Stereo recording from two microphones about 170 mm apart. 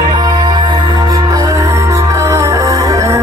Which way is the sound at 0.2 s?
25° right (ahead or behind).